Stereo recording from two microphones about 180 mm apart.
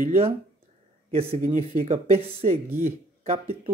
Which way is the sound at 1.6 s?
35° right (ahead or behind).